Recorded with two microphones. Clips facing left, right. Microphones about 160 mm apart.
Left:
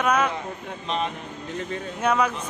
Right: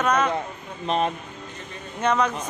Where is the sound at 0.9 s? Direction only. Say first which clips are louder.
Right 4 dB; 40° right (ahead or behind).